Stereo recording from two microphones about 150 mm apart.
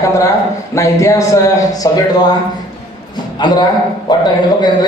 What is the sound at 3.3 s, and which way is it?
Speech, 30° left (ahead or behind).